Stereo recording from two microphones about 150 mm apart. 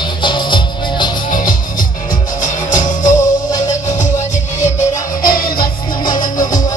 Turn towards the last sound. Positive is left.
turn(degrees=25)  # may be behind; listen again after turning